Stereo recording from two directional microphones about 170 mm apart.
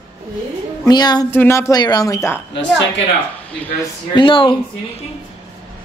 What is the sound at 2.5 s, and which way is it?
Speech, 90° left.